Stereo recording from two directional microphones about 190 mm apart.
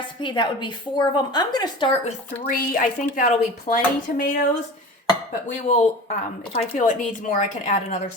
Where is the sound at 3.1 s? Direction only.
45° left (ahead or behind).